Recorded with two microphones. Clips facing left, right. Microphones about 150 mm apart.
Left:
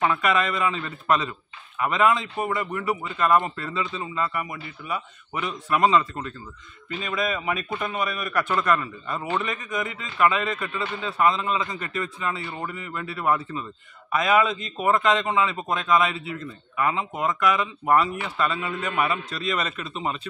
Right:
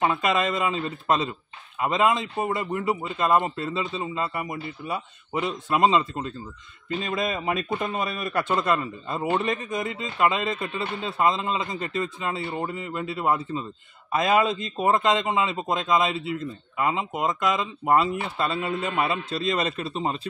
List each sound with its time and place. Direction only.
0.0 s a man's voice: 25° right (ahead or behind)